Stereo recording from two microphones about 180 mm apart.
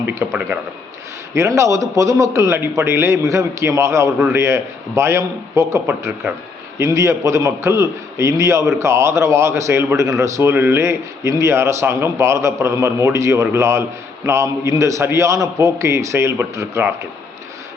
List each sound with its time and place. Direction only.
0.0 s a man's voice: 15° right (ahead or behind)